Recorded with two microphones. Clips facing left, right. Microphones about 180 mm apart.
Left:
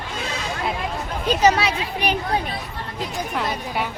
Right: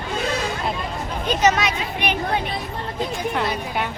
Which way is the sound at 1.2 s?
30° left (ahead or behind).